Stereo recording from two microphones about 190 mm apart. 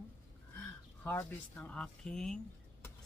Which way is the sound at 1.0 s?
10° left (ahead or behind).